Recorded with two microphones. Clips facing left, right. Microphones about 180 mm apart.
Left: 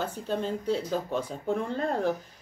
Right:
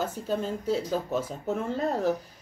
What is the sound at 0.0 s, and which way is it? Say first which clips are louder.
Speech: right 1 dB; 10° right (ahead or behind).